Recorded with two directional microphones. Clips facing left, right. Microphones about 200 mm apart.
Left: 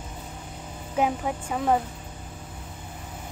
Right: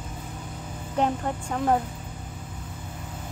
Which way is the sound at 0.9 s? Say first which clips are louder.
Even; 5° left (ahead or behind).